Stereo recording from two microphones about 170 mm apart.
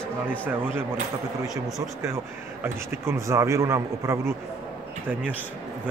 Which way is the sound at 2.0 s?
15° right (ahead or behind).